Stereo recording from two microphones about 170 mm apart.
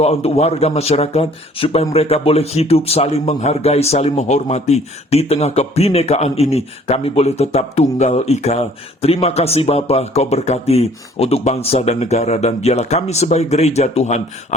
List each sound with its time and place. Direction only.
0.0 s speech: 35° left (ahead or behind)